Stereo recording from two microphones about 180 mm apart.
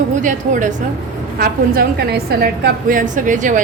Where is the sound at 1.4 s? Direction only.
60° right (ahead or behind).